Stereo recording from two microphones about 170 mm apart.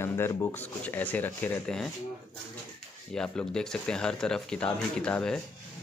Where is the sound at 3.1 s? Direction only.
5° left (ahead or behind).